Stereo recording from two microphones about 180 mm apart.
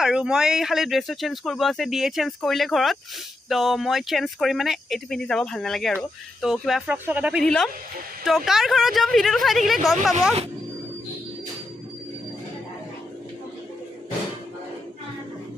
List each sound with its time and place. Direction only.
0.0 s speech: 5° right (ahead or behind)
7.4 s speech: 5° left (ahead or behind)